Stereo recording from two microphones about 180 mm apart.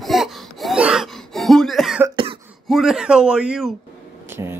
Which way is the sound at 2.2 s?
25° right (ahead or behind).